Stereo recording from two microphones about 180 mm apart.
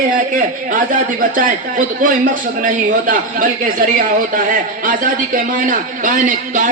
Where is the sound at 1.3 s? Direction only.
50° right (ahead or behind).